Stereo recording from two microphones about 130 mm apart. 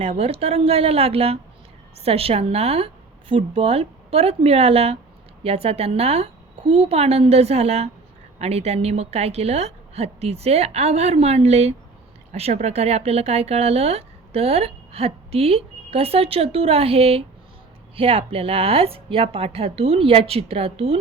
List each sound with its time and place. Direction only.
0.0 s speech: 50° right (ahead or behind)